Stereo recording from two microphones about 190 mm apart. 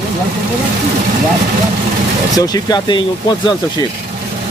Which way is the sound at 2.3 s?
20° left (ahead or behind).